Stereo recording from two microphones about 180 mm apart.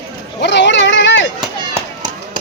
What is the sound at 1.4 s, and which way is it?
Run, 20° right (ahead or behind).